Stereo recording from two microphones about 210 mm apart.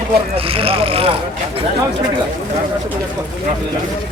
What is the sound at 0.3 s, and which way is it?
Speech, 25° right (ahead or behind).